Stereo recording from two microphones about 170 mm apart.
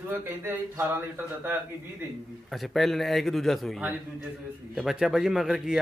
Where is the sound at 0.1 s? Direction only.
15° right (ahead or behind).